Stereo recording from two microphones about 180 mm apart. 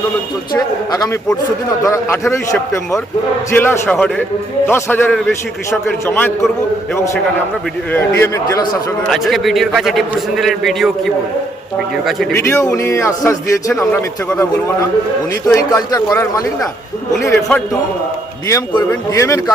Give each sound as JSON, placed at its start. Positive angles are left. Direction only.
{"t": 0.5, "sound": "a man's voice", "side_deg": 20}
{"t": 7.9, "sound": "a man's voice", "side_deg": 15}
{"t": 9.0, "sound": "a man's voice", "side_deg": 0}
{"t": 12.3, "sound": "a man's voice", "side_deg": 15}